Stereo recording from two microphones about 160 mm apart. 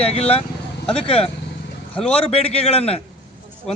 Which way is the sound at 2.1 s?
40° left (ahead or behind).